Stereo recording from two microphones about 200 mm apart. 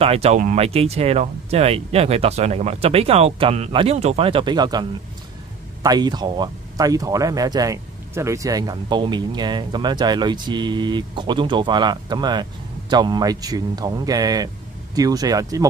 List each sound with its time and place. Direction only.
0.0 s speech: 30° right (ahead or behind)